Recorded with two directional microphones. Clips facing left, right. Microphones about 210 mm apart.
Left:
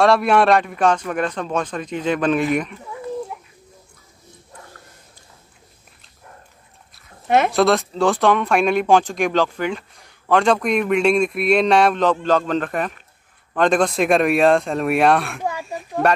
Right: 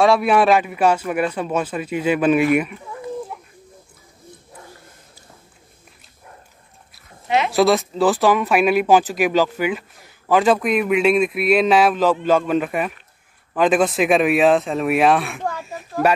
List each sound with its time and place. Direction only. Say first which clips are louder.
0.0 s speech: even; centre (ahead or behind)
7.2 s speech: left 3 dB; 50° left (ahead or behind)
7.5 s speech: right 1 dB; centre (ahead or behind)